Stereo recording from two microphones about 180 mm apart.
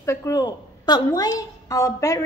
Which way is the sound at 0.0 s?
15° left (ahead or behind).